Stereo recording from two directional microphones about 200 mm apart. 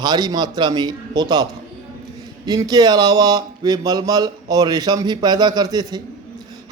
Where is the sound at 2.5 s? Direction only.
20° right (ahead or behind).